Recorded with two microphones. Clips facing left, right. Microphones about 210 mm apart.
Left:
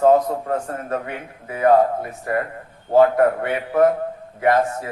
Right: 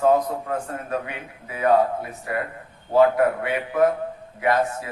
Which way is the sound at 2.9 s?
45° left (ahead or behind).